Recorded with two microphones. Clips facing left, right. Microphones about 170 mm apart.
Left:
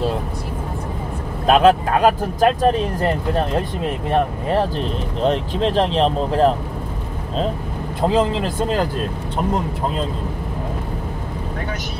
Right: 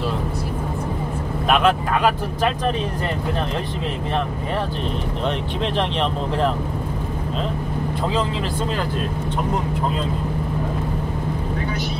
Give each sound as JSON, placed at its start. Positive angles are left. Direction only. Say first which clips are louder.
{"t": 1.5, "sound": "speech", "louder": "left 5 dB", "side_deg": 35}
{"t": 8.1, "sound": "speech", "louder": "left 5 dB", "side_deg": 45}